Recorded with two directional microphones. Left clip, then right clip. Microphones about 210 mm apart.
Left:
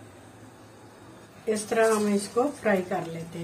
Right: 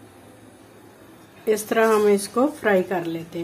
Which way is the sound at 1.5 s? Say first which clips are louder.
Right 4 dB; 55° right (ahead or behind).